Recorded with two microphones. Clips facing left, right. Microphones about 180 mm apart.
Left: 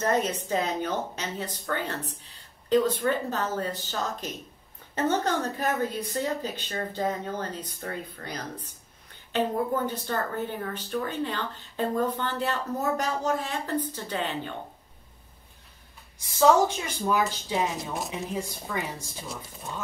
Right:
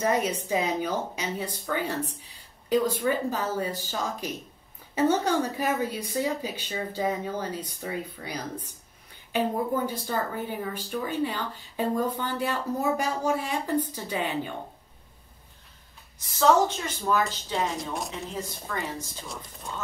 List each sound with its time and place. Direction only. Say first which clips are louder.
0.0 s a woman's voice: even; 10° right (ahead or behind)
16.3 s a woman's voice: left 1 dB; 10° left (ahead or behind)